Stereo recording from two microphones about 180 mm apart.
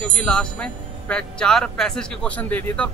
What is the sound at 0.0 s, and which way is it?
Speech, 5° left (ahead or behind).